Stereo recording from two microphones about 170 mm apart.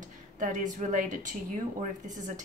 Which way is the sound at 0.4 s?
50° right (ahead or behind).